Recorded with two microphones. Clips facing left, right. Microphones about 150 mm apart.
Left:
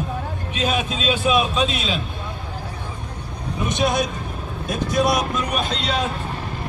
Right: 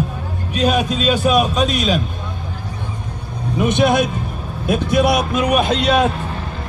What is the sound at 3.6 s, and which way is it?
Speech, 60° right (ahead or behind).